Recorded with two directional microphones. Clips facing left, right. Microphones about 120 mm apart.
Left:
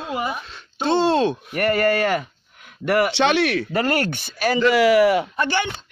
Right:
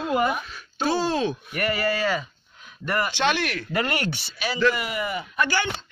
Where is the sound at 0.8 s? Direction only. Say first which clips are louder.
Left 5 dB; 30° left (ahead or behind).